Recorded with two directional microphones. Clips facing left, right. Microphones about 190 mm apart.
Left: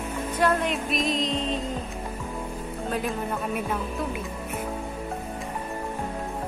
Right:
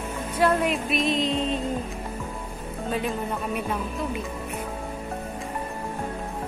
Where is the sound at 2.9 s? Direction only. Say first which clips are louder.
Right 1 dB; centre (ahead or behind).